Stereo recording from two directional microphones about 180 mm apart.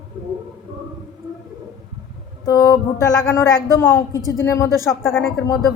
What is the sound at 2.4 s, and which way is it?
A woman's voice, 20° left (ahead or behind).